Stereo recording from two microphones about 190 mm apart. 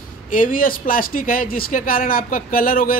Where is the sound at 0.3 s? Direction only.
45° left (ahead or behind).